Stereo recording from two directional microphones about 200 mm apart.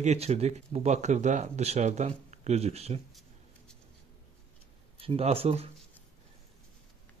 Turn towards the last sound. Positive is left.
turn(degrees=-30)  # may be behind; listen again after turning